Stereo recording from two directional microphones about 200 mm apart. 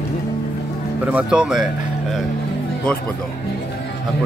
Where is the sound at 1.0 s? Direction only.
5° right (ahead or behind).